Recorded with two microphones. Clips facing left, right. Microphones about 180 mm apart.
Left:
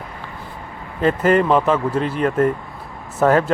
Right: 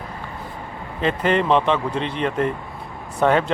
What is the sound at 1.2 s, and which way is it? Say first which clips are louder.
Speech: left 4 dB; 25° right (ahead or behind).